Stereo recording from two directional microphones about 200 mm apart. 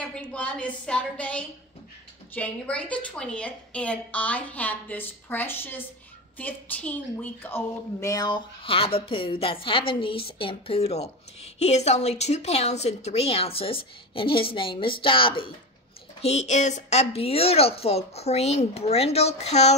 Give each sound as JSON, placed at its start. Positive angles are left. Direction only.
{"t": 0.1, "sound": "a woman's voice", "side_deg": 5}